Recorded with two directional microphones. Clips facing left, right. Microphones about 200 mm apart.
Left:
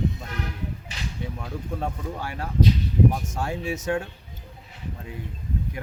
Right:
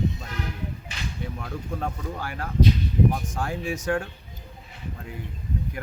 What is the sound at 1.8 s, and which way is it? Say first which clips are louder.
Speech: left 1 dB; 25° left (ahead or behind).